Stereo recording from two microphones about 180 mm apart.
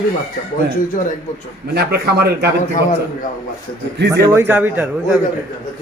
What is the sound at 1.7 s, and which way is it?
Speech, 65° right (ahead or behind).